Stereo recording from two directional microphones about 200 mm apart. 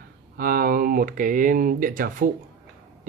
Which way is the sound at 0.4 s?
45° right (ahead or behind).